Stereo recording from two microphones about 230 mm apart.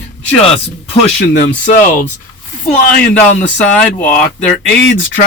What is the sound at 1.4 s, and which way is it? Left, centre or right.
Speech, left.